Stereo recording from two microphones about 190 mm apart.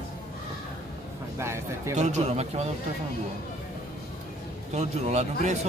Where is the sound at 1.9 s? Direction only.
35° right (ahead or behind).